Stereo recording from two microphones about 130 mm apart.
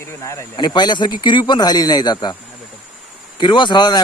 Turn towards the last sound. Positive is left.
turn(degrees=35)  # may be behind; listen again after turning